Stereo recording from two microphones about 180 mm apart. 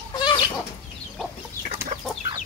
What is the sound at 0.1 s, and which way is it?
Chicken, 25° left (ahead or behind).